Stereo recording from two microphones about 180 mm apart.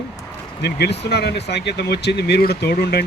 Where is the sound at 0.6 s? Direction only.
65° left (ahead or behind).